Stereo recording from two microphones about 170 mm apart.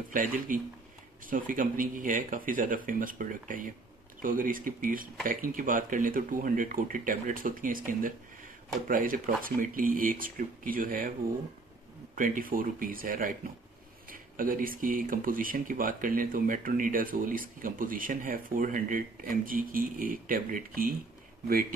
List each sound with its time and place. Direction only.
0.1 s speech: 50° right (ahead or behind)
12.2 s speech: 55° right (ahead or behind)